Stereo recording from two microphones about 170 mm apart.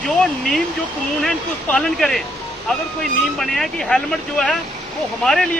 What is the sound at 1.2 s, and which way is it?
Speech, 5° left (ahead or behind).